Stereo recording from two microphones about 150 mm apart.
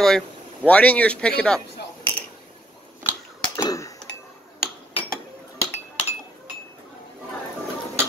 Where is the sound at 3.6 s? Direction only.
25° left (ahead or behind).